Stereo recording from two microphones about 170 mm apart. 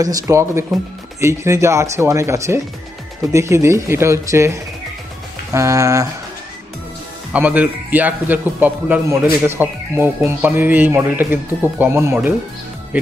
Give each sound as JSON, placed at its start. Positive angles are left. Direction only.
{"t": 0.0, "sound": "a man's voice", "side_deg": -20}
{"t": 7.3, "sound": "a man's voice", "side_deg": -10}